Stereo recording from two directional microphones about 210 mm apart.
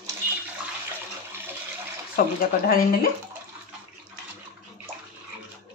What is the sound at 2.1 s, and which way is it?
Speech, 45° left (ahead or behind).